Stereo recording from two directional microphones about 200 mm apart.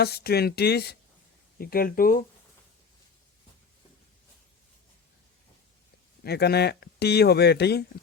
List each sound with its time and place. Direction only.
0.0 s speech: 50° left (ahead or behind)
6.2 s speech: 55° left (ahead or behind)